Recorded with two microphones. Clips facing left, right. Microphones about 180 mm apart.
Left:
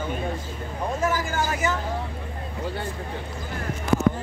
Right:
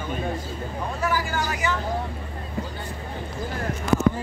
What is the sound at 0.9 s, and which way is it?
Vehicle, 45° left (ahead or behind).